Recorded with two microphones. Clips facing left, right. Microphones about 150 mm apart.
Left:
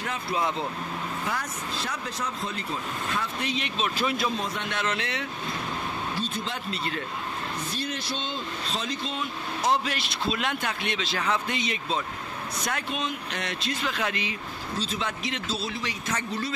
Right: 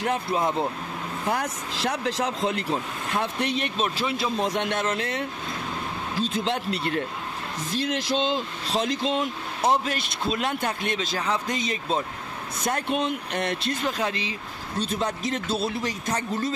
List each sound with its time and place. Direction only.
0.0 s speech: 55° right (ahead or behind)
1.7 s speech: 90° right; by 3.9 s 50° right (ahead or behind)
3.9 s speech: 25° right (ahead or behind)
4.4 s speech: 65° right (ahead or behind)
4.7 s speech: 45° right (ahead or behind)
6.1 s speech: 85° right; by 7.0 s 60° right (ahead or behind)
7.7 s speech: 90° right; by 13.9 s 50° right (ahead or behind)
13.9 s speech: 30° right (ahead or behind)
14.8 s speech: 55° right (ahead or behind)
15.0 s speech: 45° right (ahead or behind)
16.1 s speech: 40° right (ahead or behind)